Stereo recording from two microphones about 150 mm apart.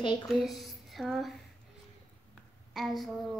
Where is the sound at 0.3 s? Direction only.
Centre (ahead or behind).